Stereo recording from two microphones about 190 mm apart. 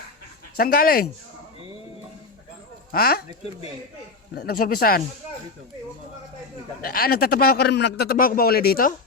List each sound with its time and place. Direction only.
0.5 s a man's voice: 50° left (ahead or behind)
2.9 s a man's voice: 50° left (ahead or behind)
4.4 s a man's voice: 50° left (ahead or behind)
6.8 s a man's voice: 50° left (ahead or behind)